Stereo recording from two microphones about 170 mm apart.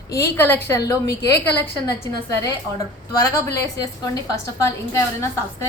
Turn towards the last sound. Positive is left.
turn(degrees=15)  # may be behind; listen again after turning